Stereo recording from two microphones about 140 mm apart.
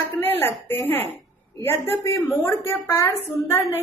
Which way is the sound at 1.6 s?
15° left (ahead or behind).